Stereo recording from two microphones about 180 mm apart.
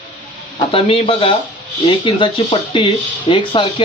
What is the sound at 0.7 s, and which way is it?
Speech, 30° left (ahead or behind).